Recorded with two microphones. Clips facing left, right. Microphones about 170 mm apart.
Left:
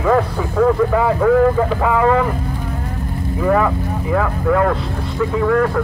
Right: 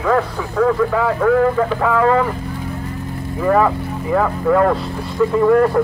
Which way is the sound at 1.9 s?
10° left (ahead or behind).